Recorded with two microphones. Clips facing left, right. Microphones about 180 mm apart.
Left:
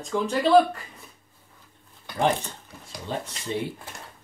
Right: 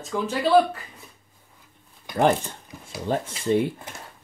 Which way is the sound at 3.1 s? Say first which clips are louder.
Right 8 dB; 50° right (ahead or behind).